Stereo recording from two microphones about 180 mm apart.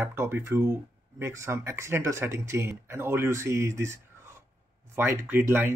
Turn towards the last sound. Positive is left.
turn(degrees=-10)  # may be behind; listen again after turning